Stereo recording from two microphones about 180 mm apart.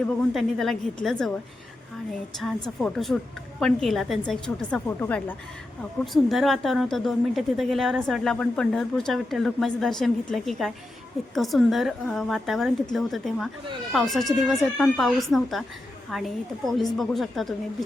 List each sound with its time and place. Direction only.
0.3 s a woman's voice: centre (ahead or behind)
2.6 s a woman's voice: centre (ahead or behind)
6.2 s a woman's voice: centre (ahead or behind)